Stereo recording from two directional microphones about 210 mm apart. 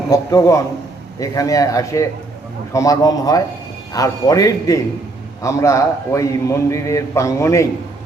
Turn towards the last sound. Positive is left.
turn(degrees=15)  # may be behind; listen again after turning